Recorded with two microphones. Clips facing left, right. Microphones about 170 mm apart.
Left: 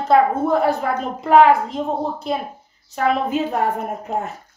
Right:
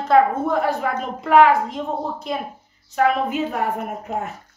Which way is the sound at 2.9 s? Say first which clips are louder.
Even; 35° left (ahead or behind).